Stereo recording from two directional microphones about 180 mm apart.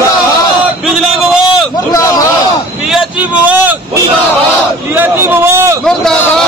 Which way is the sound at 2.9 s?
5° right (ahead or behind).